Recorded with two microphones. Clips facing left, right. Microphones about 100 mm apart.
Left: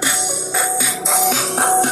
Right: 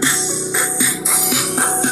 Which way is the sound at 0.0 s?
20° left (ahead or behind).